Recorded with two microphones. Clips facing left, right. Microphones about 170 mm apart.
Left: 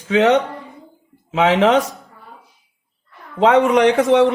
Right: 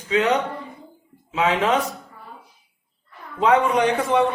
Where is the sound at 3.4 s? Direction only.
85° left.